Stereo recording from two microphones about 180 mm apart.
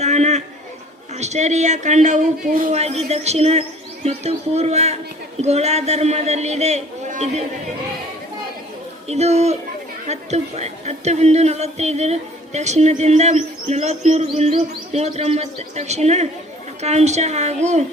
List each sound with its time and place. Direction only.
0.0 s a sound: 40° right (ahead or behind)
1.1 s a woman's voice: 40° right (ahead or behind)
9.0 s a woman's voice: 35° right (ahead or behind)